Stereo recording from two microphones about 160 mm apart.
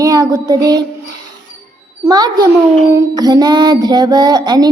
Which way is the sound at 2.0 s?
25° right (ahead or behind).